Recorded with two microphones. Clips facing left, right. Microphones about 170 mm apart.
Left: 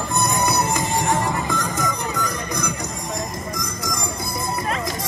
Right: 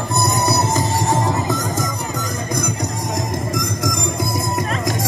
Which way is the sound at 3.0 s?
90° right.